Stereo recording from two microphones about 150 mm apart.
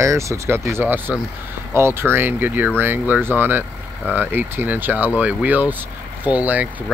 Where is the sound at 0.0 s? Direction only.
20° right (ahead or behind).